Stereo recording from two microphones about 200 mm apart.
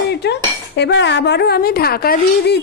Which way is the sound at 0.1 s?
55° left (ahead or behind).